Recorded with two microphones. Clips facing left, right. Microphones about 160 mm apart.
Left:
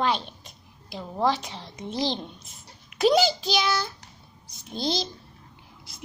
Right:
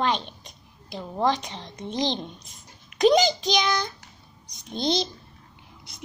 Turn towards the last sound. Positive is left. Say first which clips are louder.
# right 3 dB
turn(degrees=0)  # may be behind; listen again after turning